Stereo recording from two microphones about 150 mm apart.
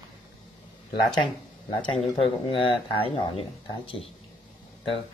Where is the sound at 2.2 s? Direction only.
35° left (ahead or behind).